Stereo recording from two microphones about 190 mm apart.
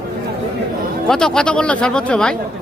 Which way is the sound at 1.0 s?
5° left (ahead or behind).